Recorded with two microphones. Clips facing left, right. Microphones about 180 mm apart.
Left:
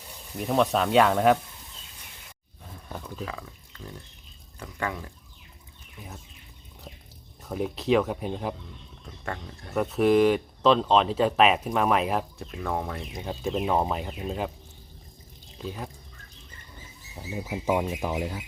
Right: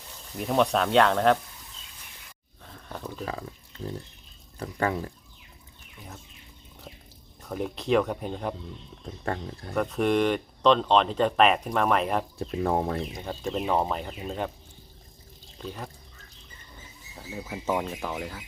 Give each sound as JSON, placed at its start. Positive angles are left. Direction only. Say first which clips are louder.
{"t": 0.3, "sound": "speech", "louder": "even", "side_deg": 0}
{"t": 3.2, "sound": "speech", "louder": "right 4 dB", "side_deg": -35}
{"t": 4.6, "sound": "speech", "louder": "right 5 dB", "side_deg": -35}
{"t": 7.4, "sound": "speech", "louder": "left 2 dB", "side_deg": 0}
{"t": 9.2, "sound": "speech", "louder": "right 4 dB", "side_deg": -35}
{"t": 9.7, "sound": "speech", "louder": "left 3 dB", "side_deg": 5}
{"t": 12.4, "sound": "speech", "louder": "right 5 dB", "side_deg": -35}
{"t": 13.2, "sound": "speech", "louder": "left 4 dB", "side_deg": 5}
{"t": 15.5, "sound": "speech", "louder": "left 2 dB", "side_deg": 5}
{"t": 17.3, "sound": "speech", "louder": "left 3 dB", "side_deg": 15}